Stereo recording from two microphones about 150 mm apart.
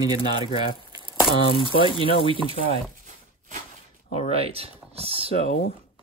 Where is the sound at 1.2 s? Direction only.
35° left (ahead or behind).